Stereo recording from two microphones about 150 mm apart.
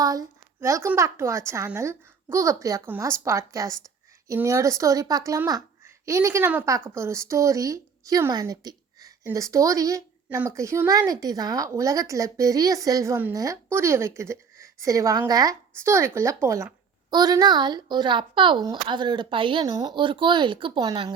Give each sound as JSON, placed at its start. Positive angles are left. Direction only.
{"t": 0.0, "sound": "a woman's voice", "side_deg": -25}